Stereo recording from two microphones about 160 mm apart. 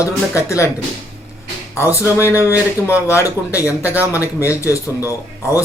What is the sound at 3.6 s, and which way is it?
Speech, 10° right (ahead or behind).